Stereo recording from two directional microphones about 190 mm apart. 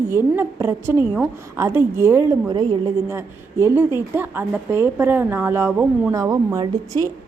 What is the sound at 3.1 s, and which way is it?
A woman's voice, 15° right (ahead or behind).